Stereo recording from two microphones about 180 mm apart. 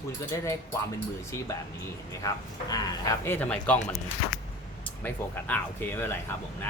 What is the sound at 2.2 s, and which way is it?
Speech, 20° left (ahead or behind).